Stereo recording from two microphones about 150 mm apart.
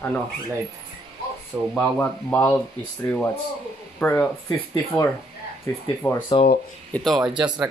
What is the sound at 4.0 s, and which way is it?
Speech, 10° left (ahead or behind).